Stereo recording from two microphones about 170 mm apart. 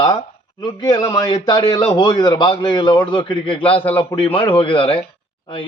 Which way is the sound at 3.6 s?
10° left (ahead or behind).